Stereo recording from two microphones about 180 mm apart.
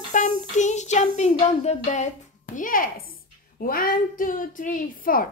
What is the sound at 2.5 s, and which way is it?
Speech, 50° left (ahead or behind).